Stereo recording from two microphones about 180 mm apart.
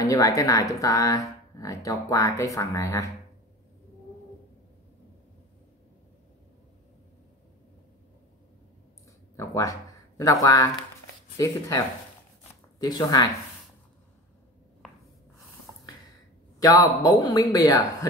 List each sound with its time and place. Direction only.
0.0 s speech: 20° left (ahead or behind)
9.4 s speech: 20° left (ahead or behind)
16.5 s speech: 20° left (ahead or behind)